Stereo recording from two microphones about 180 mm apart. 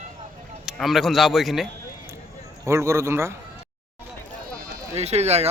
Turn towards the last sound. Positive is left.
turn(degrees=-35)  # may be behind; listen again after turning